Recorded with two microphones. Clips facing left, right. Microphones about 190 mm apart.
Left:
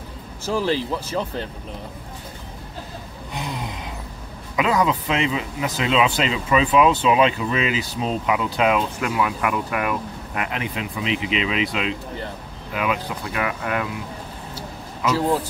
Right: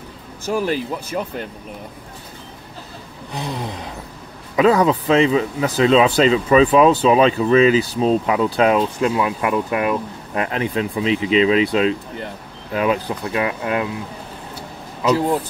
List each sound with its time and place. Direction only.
0.5 s speech: 15° right (ahead or behind)
3.3 s speech: 35° right (ahead or behind)